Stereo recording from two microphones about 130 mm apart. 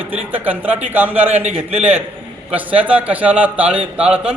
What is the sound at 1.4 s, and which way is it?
Speech, 55° right (ahead or behind).